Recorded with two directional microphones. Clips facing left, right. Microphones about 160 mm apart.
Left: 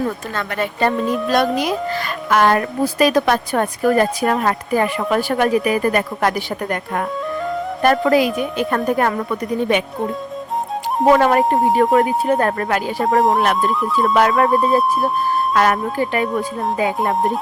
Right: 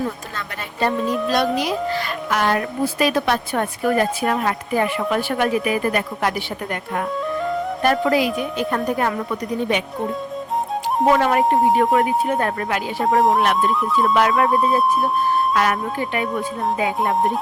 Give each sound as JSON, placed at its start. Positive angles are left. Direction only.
{"t": 0.3, "sound": "speech", "side_deg": 65}
{"t": 1.0, "sound": "music", "side_deg": 0}
{"t": 1.5, "sound": "speech", "side_deg": 50}
{"t": 8.5, "sound": "speech", "side_deg": 60}
{"t": 11.1, "sound": "speech", "side_deg": 45}
{"t": 11.4, "sound": "music", "side_deg": 0}
{"t": 11.9, "sound": "speech", "side_deg": 40}
{"t": 13.1, "sound": "music", "side_deg": 0}
{"t": 14.1, "sound": "music", "side_deg": 40}
{"t": 14.5, "sound": "music", "side_deg": 0}
{"t": 15.5, "sound": "speech", "side_deg": 45}